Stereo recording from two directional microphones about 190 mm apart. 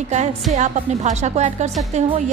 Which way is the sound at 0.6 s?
40° right (ahead or behind).